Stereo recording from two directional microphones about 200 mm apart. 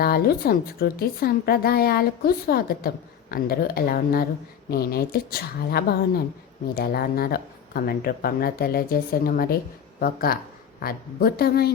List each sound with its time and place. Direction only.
0.0 s a woman's voice: 50° left (ahead or behind)